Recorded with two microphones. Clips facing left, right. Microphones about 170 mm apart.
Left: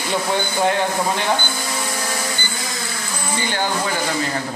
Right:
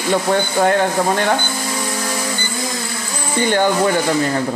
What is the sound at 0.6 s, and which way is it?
Speech, 50° right (ahead or behind).